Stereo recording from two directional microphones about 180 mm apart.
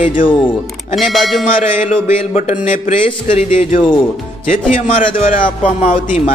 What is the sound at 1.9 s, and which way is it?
A man's voice, 45° left (ahead or behind).